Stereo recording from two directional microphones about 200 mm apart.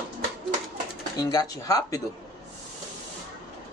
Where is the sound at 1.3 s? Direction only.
15° left (ahead or behind).